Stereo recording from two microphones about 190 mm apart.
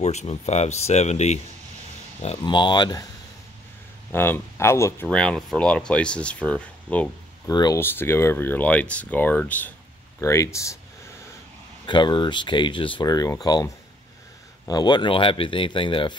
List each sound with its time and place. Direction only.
0.0 s speech: 35° left (ahead or behind)
2.2 s speech: 25° left (ahead or behind)
4.1 s speech: 10° left (ahead or behind)
7.4 s speech: 20° left (ahead or behind)
11.8 s speech: 25° left (ahead or behind)
14.7 s speech: 20° left (ahead or behind)